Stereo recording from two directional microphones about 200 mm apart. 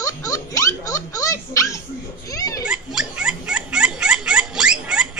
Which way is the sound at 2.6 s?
5° right (ahead or behind).